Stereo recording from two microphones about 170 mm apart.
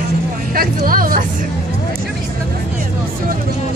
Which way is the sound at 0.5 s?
60° right (ahead or behind).